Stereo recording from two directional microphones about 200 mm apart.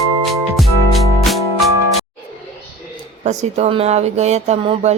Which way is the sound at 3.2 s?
35° right (ahead or behind).